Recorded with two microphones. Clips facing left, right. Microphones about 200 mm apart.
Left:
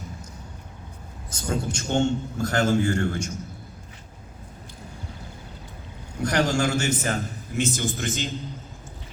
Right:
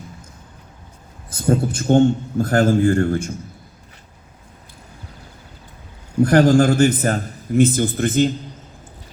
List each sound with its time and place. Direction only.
1.3 s a man's voice: 55° right (ahead or behind)
2.8 s a man's voice: 40° right (ahead or behind)
6.2 s a man's voice: 55° right (ahead or behind)